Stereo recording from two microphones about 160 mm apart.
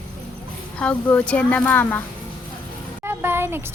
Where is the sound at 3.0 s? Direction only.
15° right (ahead or behind).